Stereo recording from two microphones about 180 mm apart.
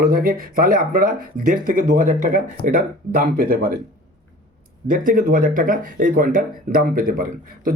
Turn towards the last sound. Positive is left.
turn(degrees=-55)  # may be behind; listen again after turning